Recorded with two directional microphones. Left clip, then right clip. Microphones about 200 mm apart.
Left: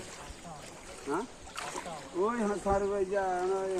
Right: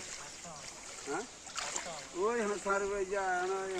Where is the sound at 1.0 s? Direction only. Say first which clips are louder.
Left 5 dB; 45° left (ahead or behind).